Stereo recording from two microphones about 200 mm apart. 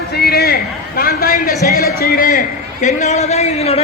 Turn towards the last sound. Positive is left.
turn(degrees=30)  # may be behind; listen again after turning